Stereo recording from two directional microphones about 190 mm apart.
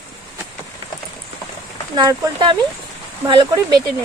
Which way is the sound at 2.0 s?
25° right (ahead or behind).